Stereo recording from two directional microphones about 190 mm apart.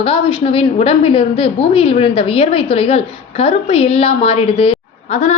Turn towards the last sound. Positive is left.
turn(degrees=35)  # may be behind; listen again after turning